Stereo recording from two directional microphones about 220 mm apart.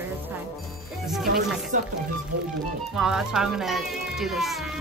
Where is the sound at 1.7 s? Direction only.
35° right (ahead or behind).